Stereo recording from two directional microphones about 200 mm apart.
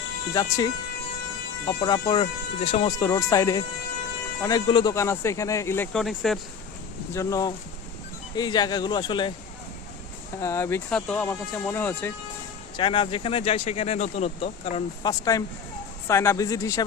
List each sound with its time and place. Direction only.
0.3 s speech: 20° left (ahead or behind)
3.0 s speech: 15° left (ahead or behind); by 6.4 s centre (ahead or behind)
7.1 s speech: 15° left (ahead or behind)
10.4 s speech: 15° left (ahead or behind)
12.7 s speech: 25° left (ahead or behind)
15.2 s speech: 15° left (ahead or behind)